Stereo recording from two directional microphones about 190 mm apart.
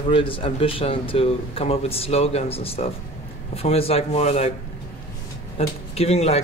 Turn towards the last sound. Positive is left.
turn(degrees=35)  # may be behind; listen again after turning